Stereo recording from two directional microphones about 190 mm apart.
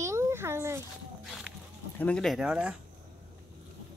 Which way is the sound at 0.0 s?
15° right (ahead or behind).